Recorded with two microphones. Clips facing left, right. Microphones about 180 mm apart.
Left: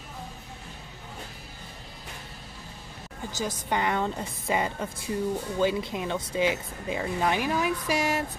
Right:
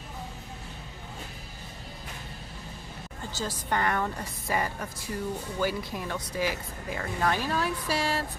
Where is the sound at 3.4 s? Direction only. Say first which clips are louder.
Left 1 dB; 15° left (ahead or behind).